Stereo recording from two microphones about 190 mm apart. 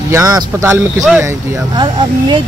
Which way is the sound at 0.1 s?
20° right (ahead or behind).